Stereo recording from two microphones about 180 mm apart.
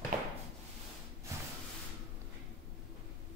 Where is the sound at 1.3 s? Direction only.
15° right (ahead or behind).